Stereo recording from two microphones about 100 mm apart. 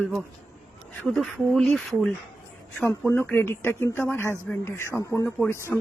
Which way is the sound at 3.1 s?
20° left (ahead or behind).